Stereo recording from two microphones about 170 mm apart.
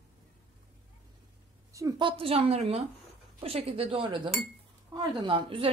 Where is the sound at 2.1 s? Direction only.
35° right (ahead or behind).